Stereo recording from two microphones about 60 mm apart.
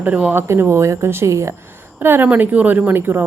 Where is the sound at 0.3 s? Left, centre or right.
Right.